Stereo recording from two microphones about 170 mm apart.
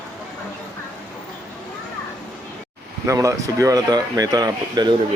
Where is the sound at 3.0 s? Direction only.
20° right (ahead or behind).